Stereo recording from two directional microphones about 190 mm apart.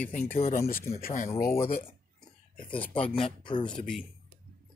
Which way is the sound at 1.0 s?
50° left (ahead or behind).